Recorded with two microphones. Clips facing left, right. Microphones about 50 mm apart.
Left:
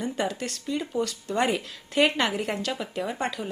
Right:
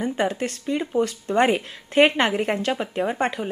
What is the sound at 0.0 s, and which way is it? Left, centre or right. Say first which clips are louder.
A woman's voice: right 5 dB; right.